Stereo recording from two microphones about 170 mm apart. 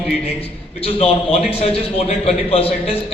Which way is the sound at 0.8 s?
35° left (ahead or behind).